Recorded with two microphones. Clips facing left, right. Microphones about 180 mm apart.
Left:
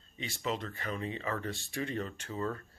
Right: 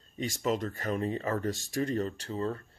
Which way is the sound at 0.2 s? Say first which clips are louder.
Right 6 dB; 45° right (ahead or behind).